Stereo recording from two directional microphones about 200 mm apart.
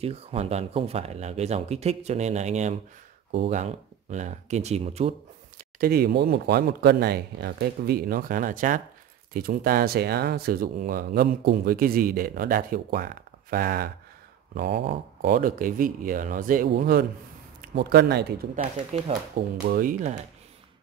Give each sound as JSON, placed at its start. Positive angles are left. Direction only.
{"t": 0.0, "sound": "speech", "side_deg": -30}
{"t": 5.6, "sound": "speech", "side_deg": -50}
{"t": 19.1, "sound": "speech", "side_deg": -30}
{"t": 19.7, "sound": "speech", "side_deg": -45}